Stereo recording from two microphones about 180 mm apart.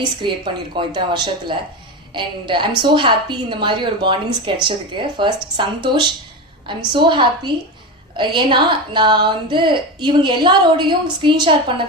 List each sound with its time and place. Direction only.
0.2 s a woman's voice: 25° right (ahead or behind)